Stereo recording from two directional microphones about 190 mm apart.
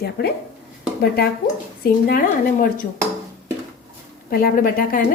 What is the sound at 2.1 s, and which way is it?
Speech, 50° left (ahead or behind).